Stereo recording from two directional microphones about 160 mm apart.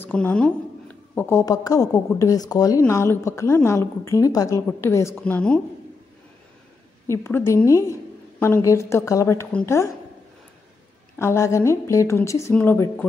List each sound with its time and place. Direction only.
0.0 s a woman's voice: 10° left (ahead or behind)
7.1 s a woman's voice: 15° left (ahead or behind)
11.1 s a woman's voice: 15° left (ahead or behind)